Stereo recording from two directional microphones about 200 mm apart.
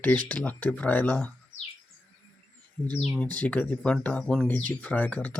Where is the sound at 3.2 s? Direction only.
5° left (ahead or behind).